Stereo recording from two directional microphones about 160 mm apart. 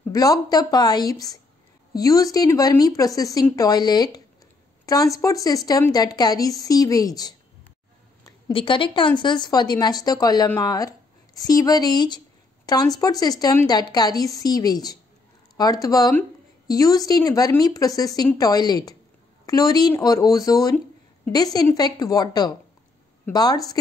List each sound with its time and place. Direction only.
0.1 s a woman's voice: 20° left (ahead or behind)
8.2 s a sound: 20° left (ahead or behind)
8.5 s a woman's voice: 30° left (ahead or behind)